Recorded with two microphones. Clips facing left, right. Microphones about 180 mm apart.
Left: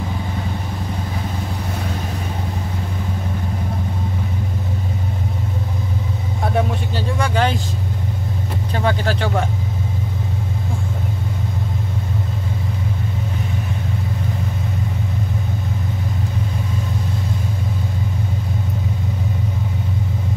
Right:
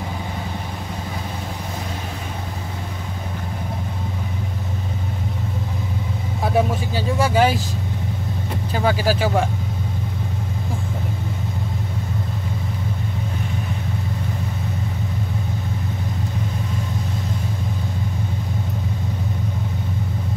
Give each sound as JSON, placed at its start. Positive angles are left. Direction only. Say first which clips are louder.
{"t": 6.4, "sound": "vehicle", "louder": "right 1 dB", "side_deg": -5}
{"t": 8.7, "sound": "speech", "louder": "right 1 dB", "side_deg": -5}